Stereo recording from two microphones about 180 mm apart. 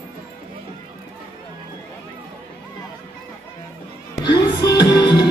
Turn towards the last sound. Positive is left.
turn(degrees=25)  # may be behind; listen again after turning